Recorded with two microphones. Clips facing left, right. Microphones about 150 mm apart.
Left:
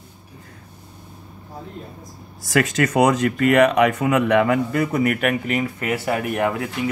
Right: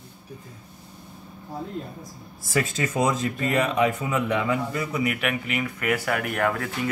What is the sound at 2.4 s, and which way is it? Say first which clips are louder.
Speech: left 6 dB; 85° left.